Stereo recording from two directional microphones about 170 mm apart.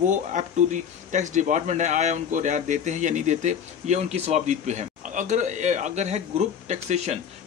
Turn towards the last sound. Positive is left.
turn(degrees=-40)  # may be behind; listen again after turning